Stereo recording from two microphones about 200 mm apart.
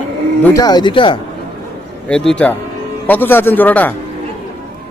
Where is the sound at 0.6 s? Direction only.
20° left (ahead or behind).